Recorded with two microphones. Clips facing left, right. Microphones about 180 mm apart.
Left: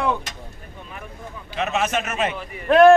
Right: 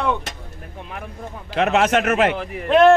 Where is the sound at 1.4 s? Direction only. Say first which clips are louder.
Right 6 dB; 70° right (ahead or behind).